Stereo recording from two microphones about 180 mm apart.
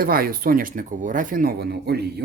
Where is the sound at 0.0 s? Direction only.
55° right (ahead or behind).